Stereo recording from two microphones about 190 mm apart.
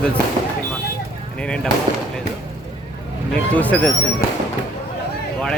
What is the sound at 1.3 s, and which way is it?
Speech, 5° left (ahead or behind).